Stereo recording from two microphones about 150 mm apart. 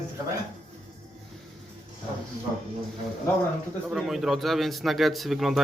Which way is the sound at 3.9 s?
Centre (ahead or behind).